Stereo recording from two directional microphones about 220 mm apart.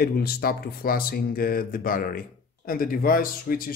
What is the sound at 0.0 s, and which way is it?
Speech, 45° left (ahead or behind).